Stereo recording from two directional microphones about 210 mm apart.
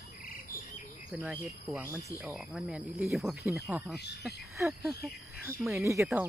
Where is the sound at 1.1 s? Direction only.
5° right (ahead or behind).